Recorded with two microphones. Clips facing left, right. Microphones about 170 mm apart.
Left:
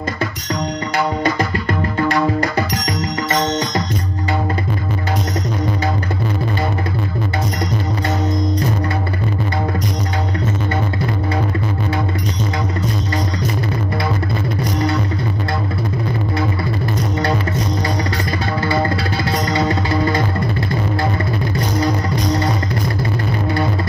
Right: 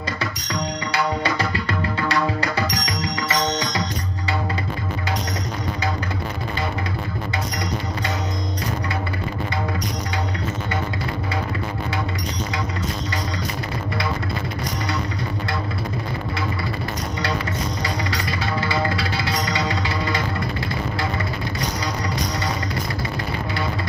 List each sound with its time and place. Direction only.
0.9 s music: 50° left (ahead or behind)